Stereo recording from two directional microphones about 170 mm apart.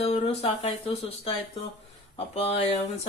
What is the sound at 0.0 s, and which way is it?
Speech, 35° left (ahead or behind).